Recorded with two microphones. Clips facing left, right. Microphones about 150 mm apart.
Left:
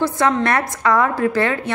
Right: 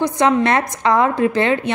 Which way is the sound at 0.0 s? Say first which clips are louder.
Right 2 dB; 20° right (ahead or behind).